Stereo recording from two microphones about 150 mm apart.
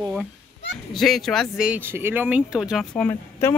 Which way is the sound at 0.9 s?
Centre (ahead or behind).